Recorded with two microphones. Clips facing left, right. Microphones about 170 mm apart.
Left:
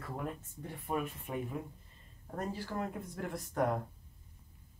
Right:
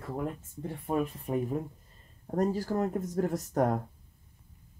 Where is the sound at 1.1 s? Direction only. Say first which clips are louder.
Right 8 dB; 40° right (ahead or behind).